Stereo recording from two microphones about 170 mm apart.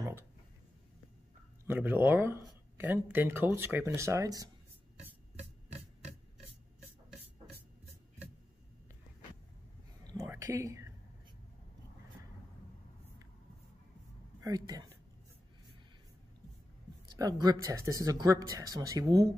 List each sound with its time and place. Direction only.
1.7 s speech: 10° right (ahead or behind)
10.0 s whispering: 15° right (ahead or behind)
14.4 s speech: 20° right (ahead or behind)
17.2 s speech: 20° right (ahead or behind)